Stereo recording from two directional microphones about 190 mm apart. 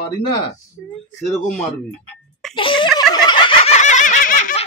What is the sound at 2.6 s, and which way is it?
Speech, 25° left (ahead or behind).